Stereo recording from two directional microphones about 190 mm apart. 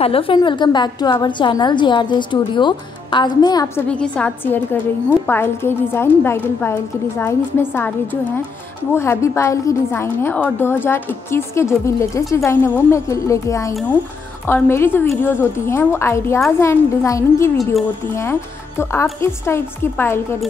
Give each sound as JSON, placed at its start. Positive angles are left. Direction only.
{"t": 0.0, "sound": "a woman's voice", "side_deg": 30}
{"t": 18.8, "sound": "a woman's voice", "side_deg": 15}